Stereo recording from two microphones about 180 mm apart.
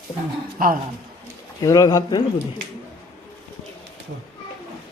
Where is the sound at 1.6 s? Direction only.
20° left (ahead or behind).